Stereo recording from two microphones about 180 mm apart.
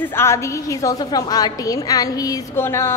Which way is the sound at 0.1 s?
15° left (ahead or behind).